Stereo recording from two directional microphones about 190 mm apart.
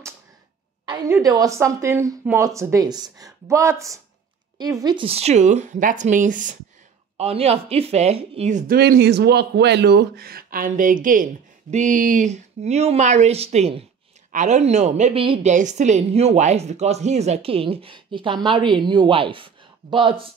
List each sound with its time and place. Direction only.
1.2 s a woman's voice: 20° right (ahead or behind); by 6.5 s 45° right (ahead or behind)
7.2 s a woman's voice: 30° right (ahead or behind)
8.7 s a woman's voice: 55° right (ahead or behind); by 20.2 s 25° right (ahead or behind)